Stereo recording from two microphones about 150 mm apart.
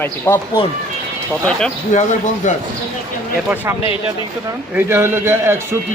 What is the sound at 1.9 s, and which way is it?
Speech, 55° left (ahead or behind).